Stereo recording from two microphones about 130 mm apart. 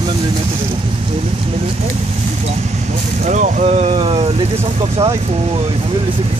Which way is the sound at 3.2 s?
70° right (ahead or behind).